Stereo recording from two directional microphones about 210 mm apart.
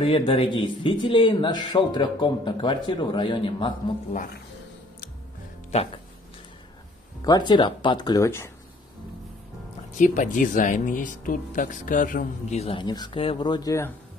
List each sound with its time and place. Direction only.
0.0 s speech: 25° left (ahead or behind)
7.2 s speech: 20° left (ahead or behind)
9.9 s speech: 35° left (ahead or behind); by 13.9 s 15° left (ahead or behind)